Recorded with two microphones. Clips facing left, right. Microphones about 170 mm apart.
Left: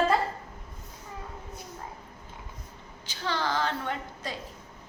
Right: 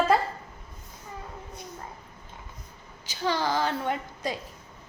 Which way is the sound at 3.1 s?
10° right (ahead or behind).